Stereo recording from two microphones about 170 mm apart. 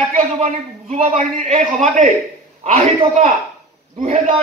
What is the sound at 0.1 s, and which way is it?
A man's voice, 40° right (ahead or behind).